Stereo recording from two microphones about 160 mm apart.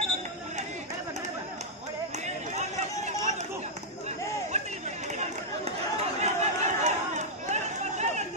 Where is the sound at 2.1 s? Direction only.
45° right (ahead or behind).